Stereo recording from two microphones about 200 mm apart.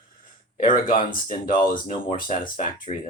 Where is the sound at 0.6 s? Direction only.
45° left (ahead or behind).